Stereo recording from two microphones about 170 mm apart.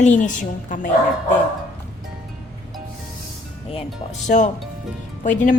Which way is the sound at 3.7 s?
45° left (ahead or behind).